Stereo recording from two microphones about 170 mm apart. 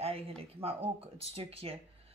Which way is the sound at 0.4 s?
35° right (ahead or behind).